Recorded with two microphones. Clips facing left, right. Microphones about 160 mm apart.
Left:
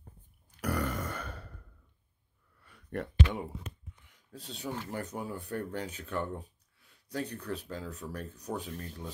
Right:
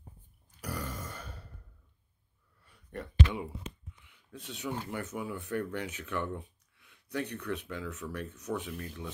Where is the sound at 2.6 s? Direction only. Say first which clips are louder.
Left 5 dB; 70° left (ahead or behind).